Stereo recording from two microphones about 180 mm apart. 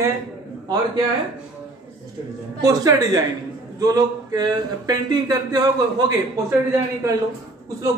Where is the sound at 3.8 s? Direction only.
20° right (ahead or behind).